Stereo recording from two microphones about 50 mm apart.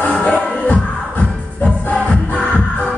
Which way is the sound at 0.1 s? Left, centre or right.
Left.